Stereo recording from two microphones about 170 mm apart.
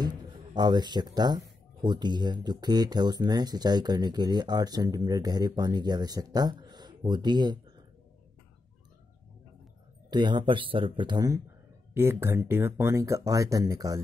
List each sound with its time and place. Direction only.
0.0 s speech: 25° right (ahead or behind)
10.0 s speech: 25° right (ahead or behind)